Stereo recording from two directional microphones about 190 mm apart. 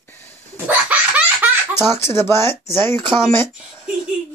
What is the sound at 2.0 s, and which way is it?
Speech, 15° left (ahead or behind).